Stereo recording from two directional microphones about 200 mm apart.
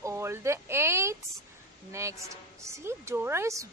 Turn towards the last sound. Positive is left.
turn(degrees=-15)  # may be behind; listen again after turning